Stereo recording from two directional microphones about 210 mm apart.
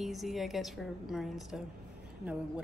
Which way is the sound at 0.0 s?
Centre (ahead or behind).